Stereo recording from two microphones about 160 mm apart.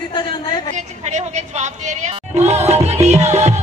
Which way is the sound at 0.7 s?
45° right (ahead or behind).